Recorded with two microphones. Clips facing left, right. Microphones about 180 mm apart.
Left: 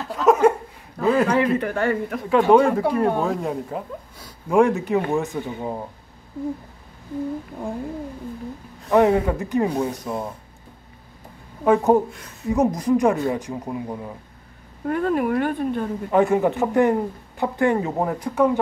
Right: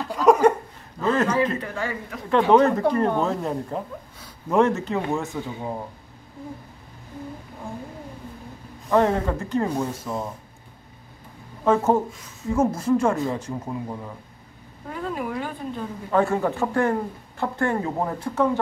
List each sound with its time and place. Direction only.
0.0 s a sound: centre (ahead or behind)
1.0 s a man's voice: 10° left (ahead or behind)
1.6 s speech: 55° left (ahead or behind)
2.2 s speech: 10° left (ahead or behind)
8.9 s speech: 15° left (ahead or behind)
11.6 s speech: 15° left (ahead or behind)
12.1 s speech: 60° left (ahead or behind)
12.4 s speech: 15° left (ahead or behind)
14.9 s speech: 60° left (ahead or behind)
16.1 s speech: 15° left (ahead or behind)